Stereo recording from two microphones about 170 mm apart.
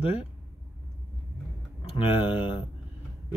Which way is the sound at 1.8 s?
30° left (ahead or behind).